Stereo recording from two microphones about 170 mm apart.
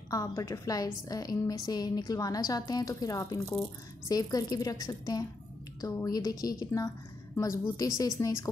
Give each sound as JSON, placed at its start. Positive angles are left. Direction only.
{"t": 0.1, "sound": "a woman's voice", "side_deg": 20}